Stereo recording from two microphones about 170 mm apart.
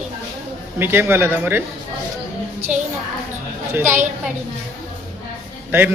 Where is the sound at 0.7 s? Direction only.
15° right (ahead or behind).